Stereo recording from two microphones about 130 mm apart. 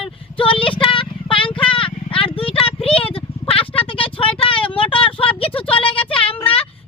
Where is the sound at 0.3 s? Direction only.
45° left (ahead or behind).